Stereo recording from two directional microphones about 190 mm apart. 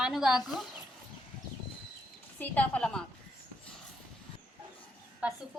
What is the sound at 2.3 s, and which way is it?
Speech, 5° left (ahead or behind).